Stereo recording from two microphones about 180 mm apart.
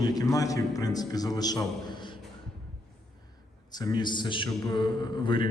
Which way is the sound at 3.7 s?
25° left (ahead or behind).